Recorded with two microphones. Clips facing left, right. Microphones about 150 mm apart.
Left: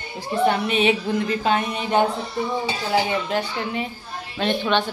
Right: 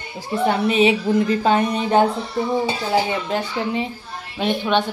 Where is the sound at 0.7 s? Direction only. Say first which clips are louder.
Right 4 dB; 30° right (ahead or behind).